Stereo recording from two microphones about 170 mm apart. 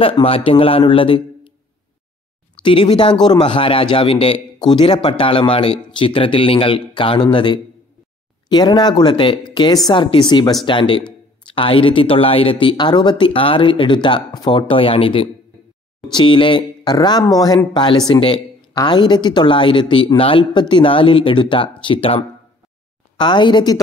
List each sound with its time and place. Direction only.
0.0 s a man's voice: 35° left (ahead or behind)
2.6 s a man's voice: 30° left (ahead or behind)